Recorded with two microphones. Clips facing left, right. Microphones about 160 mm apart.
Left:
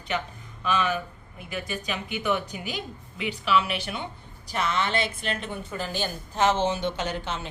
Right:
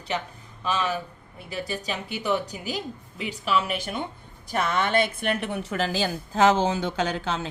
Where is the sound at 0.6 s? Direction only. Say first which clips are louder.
Left 1 dB; 35° right (ahead or behind); by 6.1 s 90° right.